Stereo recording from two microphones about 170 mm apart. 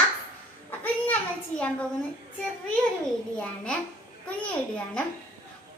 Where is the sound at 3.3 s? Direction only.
5° left (ahead or behind).